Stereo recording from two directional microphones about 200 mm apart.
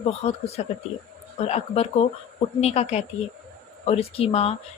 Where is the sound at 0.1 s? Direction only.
30° left (ahead or behind).